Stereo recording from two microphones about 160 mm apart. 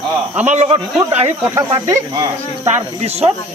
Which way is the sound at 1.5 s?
20° right (ahead or behind).